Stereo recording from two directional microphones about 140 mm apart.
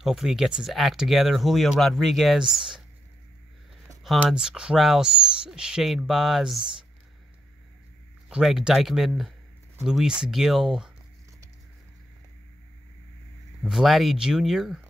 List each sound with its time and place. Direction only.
0.0 s speech: 5° right (ahead or behind)
4.2 s speech: 5° right (ahead or behind)
8.3 s speech: 5° right (ahead or behind)
13.7 s speech: centre (ahead or behind)